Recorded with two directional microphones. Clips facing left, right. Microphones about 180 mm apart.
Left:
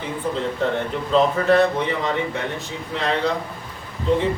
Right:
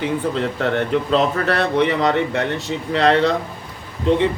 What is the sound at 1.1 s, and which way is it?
A man's voice, 75° right (ahead or behind).